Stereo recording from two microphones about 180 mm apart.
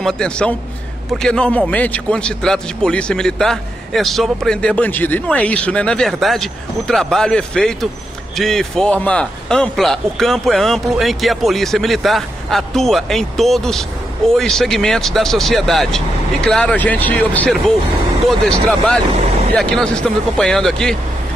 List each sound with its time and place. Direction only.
0.0 s a man's voice: 5° left (ahead or behind)